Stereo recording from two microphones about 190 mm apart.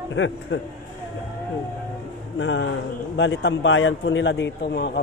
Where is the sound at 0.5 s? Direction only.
70° left (ahead or behind).